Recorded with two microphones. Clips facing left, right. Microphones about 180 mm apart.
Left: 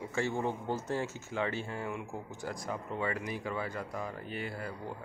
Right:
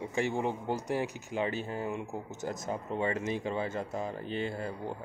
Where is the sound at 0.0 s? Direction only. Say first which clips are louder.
Right 2 dB; 15° right (ahead or behind).